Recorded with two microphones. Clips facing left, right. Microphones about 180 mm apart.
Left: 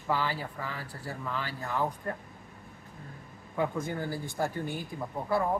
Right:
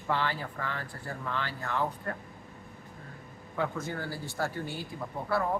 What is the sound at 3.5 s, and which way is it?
Speech, 15° left (ahead or behind).